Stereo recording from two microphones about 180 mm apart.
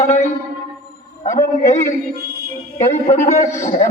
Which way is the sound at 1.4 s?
40° left (ahead or behind).